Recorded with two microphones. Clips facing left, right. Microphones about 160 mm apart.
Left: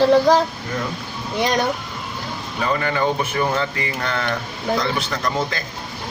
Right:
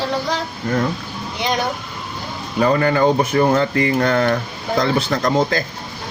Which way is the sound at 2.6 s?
40° right (ahead or behind).